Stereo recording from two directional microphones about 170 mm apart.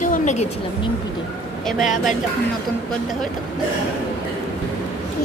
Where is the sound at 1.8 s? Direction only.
50° left (ahead or behind).